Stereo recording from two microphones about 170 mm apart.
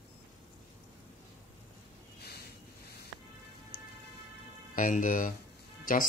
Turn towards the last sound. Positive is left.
turn(degrees=55)  # may be behind; listen again after turning